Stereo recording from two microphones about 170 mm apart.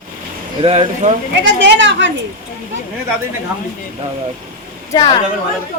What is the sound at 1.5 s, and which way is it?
Speech, 90° right.